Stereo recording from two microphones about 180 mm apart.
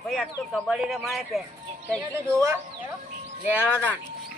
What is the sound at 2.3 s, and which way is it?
Speech, 15° right (ahead or behind).